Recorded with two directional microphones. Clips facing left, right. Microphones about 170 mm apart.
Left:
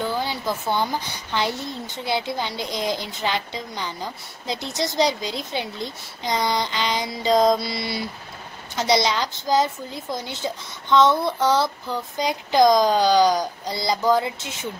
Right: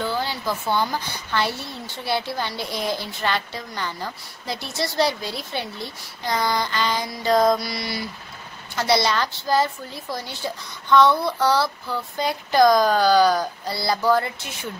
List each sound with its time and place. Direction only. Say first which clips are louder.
0.0 s a woman's voice: even; 15° left (ahead or behind)